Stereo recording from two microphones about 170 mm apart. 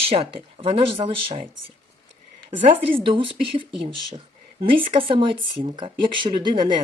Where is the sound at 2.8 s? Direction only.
30° right (ahead or behind).